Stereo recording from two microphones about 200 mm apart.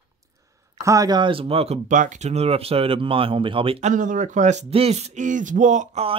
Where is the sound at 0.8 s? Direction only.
20° right (ahead or behind).